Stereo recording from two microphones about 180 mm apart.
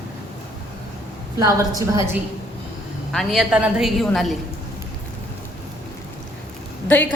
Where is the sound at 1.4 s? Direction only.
20° right (ahead or behind).